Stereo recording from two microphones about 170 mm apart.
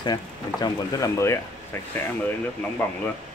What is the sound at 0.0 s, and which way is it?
Speech, 25° left (ahead or behind).